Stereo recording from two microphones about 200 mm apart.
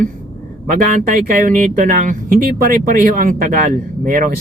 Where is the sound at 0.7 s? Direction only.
40° right (ahead or behind).